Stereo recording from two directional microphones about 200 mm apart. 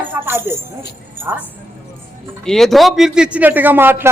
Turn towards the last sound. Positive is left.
turn(degrees=-10)  # may be behind; listen again after turning